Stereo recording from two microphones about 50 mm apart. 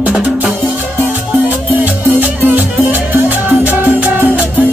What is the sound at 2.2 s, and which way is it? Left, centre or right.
Music, right.